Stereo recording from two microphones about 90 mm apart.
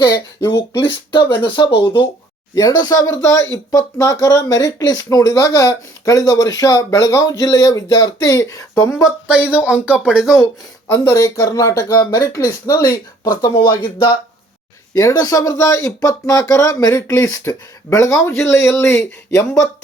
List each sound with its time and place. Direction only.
0.0 s speech: 50° left (ahead or behind)
1.4 s speech: 65° left (ahead or behind)
2.6 s speech: 50° left (ahead or behind)
9.3 s speech: 15° right (ahead or behind)
11.1 s speech: 40° left (ahead or behind); by 14.1 s 55° left (ahead or behind)
14.9 s speech: 40° left (ahead or behind)